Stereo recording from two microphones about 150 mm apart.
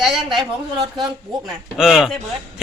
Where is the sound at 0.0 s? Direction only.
Centre (ahead or behind).